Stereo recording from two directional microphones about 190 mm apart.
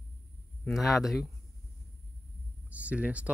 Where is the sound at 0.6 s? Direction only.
Centre (ahead or behind).